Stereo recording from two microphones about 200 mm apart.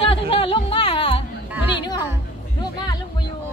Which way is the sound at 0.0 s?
30° left (ahead or behind).